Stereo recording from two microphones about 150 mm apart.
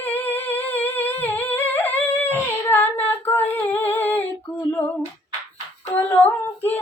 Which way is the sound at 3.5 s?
15° left (ahead or behind).